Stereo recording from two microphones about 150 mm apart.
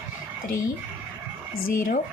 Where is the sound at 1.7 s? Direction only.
65° left (ahead or behind).